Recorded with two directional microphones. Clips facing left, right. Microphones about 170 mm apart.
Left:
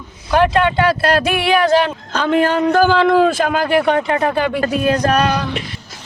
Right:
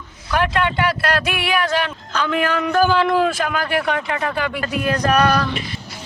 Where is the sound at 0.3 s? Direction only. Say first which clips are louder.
Left 6 dB; 30° left (ahead or behind).